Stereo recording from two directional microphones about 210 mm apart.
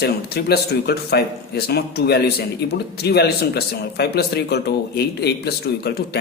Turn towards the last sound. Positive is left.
turn(degrees=50)  # may be behind; listen again after turning